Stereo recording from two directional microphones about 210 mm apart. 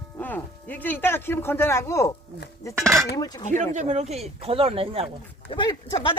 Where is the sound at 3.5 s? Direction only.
35° right (ahead or behind).